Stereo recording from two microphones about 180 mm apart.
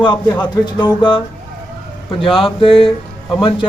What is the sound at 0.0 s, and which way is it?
Speech, 25° left (ahead or behind).